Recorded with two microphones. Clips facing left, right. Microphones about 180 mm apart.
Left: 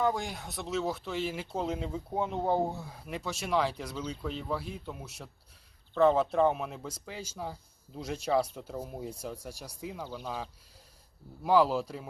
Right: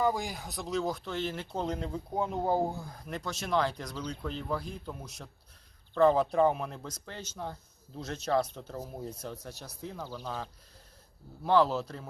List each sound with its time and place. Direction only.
0.0 s speech: centre (ahead or behind)